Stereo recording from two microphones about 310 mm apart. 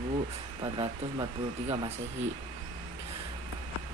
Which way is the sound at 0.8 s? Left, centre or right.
Centre.